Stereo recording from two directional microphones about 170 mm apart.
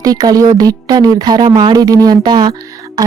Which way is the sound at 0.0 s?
20° right (ahead or behind).